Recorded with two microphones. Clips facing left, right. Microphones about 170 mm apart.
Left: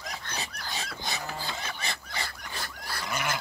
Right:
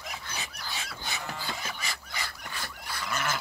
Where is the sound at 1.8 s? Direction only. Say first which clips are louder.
Left 2 dB; 30° left (ahead or behind).